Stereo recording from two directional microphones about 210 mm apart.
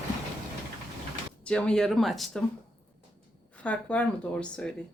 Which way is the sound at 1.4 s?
5° left (ahead or behind).